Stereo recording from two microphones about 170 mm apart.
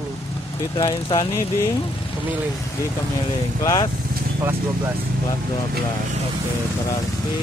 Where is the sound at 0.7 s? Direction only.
30° left (ahead or behind).